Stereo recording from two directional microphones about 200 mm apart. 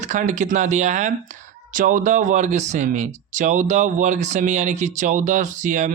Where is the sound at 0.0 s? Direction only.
40° right (ahead or behind).